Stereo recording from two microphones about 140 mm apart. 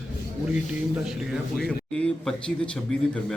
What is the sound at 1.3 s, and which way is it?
A man's voice, centre (ahead or behind).